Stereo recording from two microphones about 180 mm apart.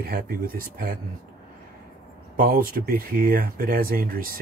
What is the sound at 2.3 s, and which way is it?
Speech, 55° right (ahead or behind).